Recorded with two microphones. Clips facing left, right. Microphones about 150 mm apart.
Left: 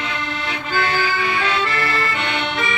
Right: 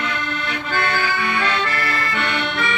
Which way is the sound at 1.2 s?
60° right (ahead or behind).